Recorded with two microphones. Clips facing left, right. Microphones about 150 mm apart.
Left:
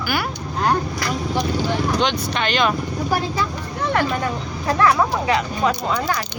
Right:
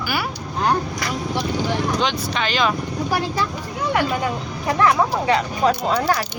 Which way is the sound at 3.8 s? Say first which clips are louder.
Even; 15° right (ahead or behind).